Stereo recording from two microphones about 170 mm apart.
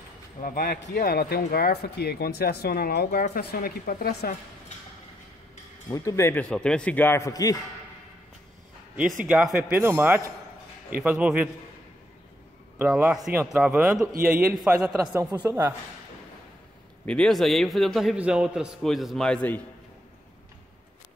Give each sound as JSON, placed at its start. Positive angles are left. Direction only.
{"t": 0.4, "sound": "speech", "side_deg": 55}
{"t": 5.9, "sound": "speech", "side_deg": 20}
{"t": 6.5, "sound": "speech", "side_deg": 5}
{"t": 8.9, "sound": "a man's voice", "side_deg": -5}
{"t": 12.7, "sound": "a man's voice", "side_deg": -10}
{"t": 15.0, "sound": "a man's voice", "side_deg": -15}
{"t": 17.0, "sound": "a man's voice", "side_deg": 5}